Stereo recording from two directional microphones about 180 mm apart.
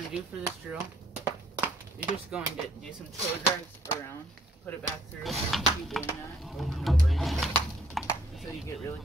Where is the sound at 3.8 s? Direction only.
15° left (ahead or behind); by 7.5 s centre (ahead or behind).